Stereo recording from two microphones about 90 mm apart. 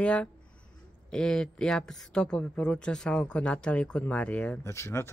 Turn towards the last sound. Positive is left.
turn(degrees=30)  # may be behind; listen again after turning